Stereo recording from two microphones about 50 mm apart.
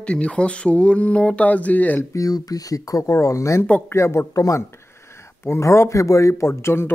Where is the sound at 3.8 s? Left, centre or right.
Left.